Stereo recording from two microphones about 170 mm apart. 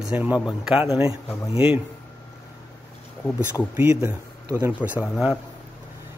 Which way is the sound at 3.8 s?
15° right (ahead or behind).